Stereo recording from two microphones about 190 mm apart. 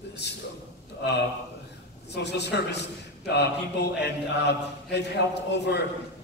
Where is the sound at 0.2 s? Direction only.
60° left (ahead or behind).